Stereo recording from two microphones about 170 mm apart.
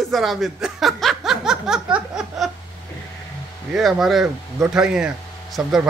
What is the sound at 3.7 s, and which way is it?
Speech, centre (ahead or behind).